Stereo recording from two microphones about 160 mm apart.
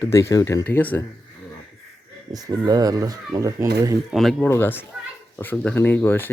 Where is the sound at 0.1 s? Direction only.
20° left (ahead or behind).